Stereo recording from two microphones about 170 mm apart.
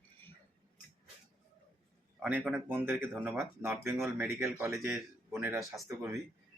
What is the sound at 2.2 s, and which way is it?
Speech, 10° right (ahead or behind).